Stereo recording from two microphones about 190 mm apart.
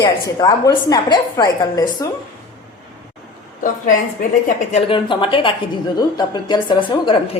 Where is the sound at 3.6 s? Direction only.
45° left (ahead or behind).